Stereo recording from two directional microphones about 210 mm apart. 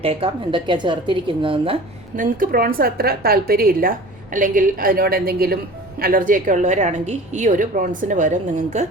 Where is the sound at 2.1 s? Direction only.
40° right (ahead or behind).